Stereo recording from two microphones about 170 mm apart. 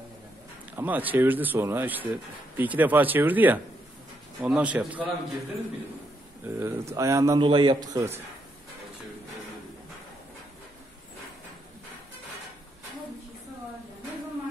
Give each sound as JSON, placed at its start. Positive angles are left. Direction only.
{"t": 0.7, "sound": "speech", "side_deg": -10}
{"t": 6.4, "sound": "a man's voice", "side_deg": -15}